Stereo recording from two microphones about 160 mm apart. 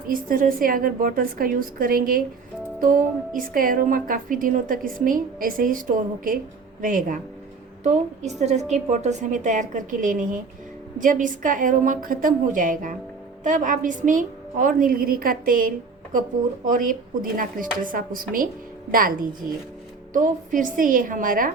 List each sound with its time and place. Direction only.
0.1 s a woman's voice: 60° right (ahead or behind)
7.9 s a woman's voice: 45° right (ahead or behind)